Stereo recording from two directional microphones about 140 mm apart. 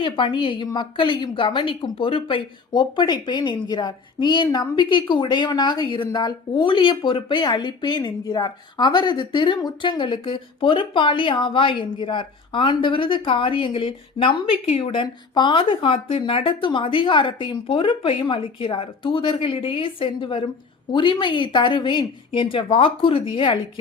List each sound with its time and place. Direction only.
0.0 s speech: 35° left (ahead or behind)